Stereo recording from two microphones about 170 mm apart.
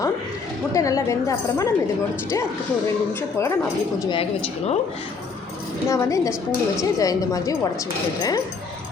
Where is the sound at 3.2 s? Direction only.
15° left (ahead or behind).